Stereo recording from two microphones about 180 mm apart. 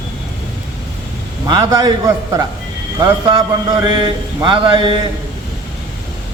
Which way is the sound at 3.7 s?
25° right (ahead or behind).